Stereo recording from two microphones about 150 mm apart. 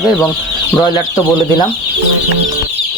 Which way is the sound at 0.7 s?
20° left (ahead or behind).